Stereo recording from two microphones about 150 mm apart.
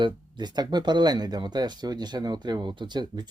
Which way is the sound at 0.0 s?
30° right (ahead or behind).